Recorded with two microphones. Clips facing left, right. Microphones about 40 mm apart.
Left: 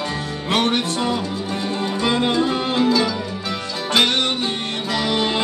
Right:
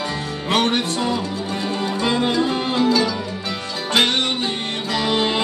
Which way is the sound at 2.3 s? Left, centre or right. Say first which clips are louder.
Even; right.